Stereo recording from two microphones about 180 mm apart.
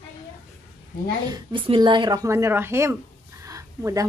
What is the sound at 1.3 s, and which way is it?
Speech, 25° right (ahead or behind).